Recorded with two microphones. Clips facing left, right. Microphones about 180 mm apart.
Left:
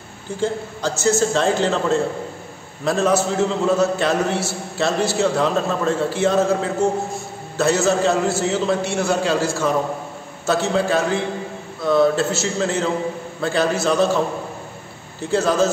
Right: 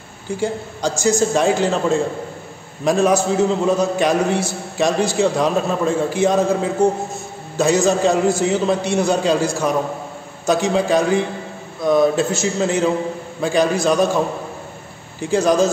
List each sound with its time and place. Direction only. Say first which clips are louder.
0.4 s a man's voice: even; 15° right (ahead or behind)
15.2 s a man's voice: right 2 dB; 15° right (ahead or behind)